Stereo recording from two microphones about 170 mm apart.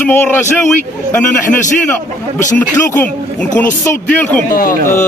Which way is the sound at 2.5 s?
10° left (ahead or behind).